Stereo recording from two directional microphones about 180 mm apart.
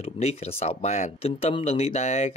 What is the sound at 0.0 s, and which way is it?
Speech, 35° left (ahead or behind).